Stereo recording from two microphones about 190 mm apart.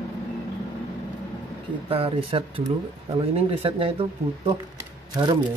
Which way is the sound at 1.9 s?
30° right (ahead or behind).